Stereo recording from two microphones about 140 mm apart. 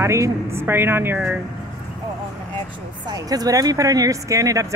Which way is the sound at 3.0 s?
30° right (ahead or behind).